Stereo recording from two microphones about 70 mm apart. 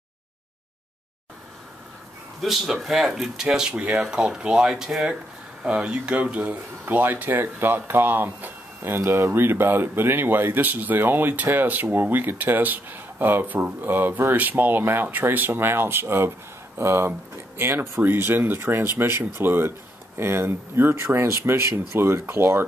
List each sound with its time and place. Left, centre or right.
2.4 s speech: centre
6.9 s speech: right